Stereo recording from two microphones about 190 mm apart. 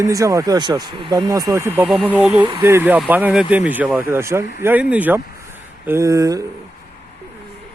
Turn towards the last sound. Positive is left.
turn(degrees=-15)  # may be behind; listen again after turning